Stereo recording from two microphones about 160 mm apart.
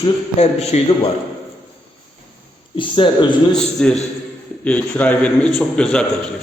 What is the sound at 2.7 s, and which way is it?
Speech, 30° left (ahead or behind).